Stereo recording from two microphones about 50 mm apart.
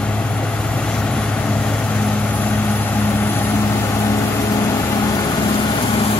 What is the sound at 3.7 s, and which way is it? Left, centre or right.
Vehicle, left.